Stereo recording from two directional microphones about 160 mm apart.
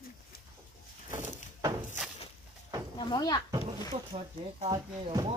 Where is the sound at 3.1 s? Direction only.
25° left (ahead or behind).